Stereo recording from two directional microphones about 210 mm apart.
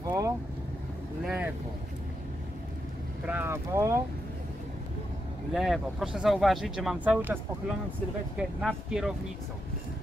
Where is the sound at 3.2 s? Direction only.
10° right (ahead or behind).